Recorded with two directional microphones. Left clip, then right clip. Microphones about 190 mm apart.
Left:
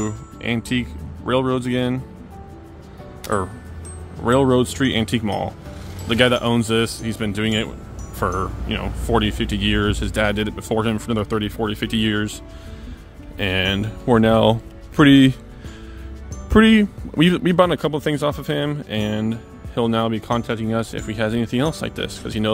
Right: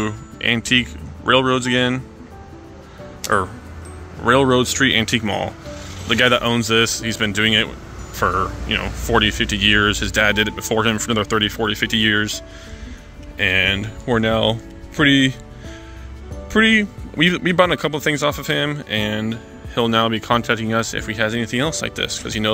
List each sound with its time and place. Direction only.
0.0 s speech: 5° left (ahead or behind)
4.2 s speech: 15° left (ahead or behind)
13.4 s speech: 25° left (ahead or behind)
16.4 s speech: 35° left (ahead or behind); by 22.5 s 15° left (ahead or behind)